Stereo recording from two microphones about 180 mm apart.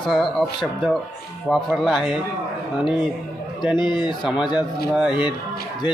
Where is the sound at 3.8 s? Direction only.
25° left (ahead or behind).